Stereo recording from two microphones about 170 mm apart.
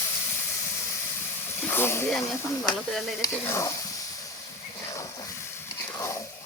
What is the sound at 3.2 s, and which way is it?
Speech, 20° left (ahead or behind).